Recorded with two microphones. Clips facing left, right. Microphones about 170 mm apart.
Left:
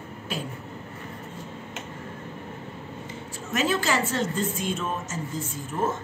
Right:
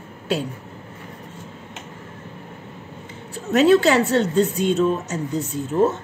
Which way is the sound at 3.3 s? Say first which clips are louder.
Right 11 dB; 65° right (ahead or behind).